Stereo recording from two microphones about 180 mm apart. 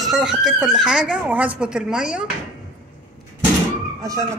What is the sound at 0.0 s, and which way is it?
Speech, centre (ahead or behind).